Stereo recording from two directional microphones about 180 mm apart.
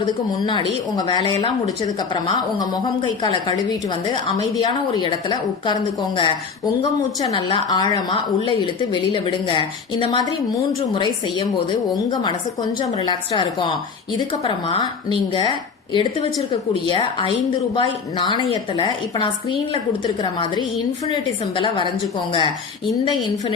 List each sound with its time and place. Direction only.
0.4 s a woman's voice: 25° left (ahead or behind)
13.0 s a woman's voice: 25° left (ahead or behind)